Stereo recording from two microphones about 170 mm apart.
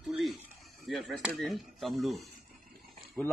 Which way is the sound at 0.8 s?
Centre (ahead or behind).